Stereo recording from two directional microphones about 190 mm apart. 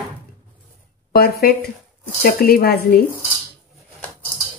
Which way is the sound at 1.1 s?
55° left (ahead or behind).